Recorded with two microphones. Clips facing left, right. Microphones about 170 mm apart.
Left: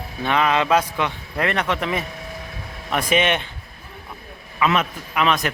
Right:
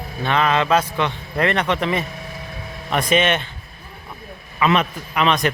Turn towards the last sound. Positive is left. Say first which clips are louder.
# right 2 dB
turn(degrees=5)  # may be behind; listen again after turning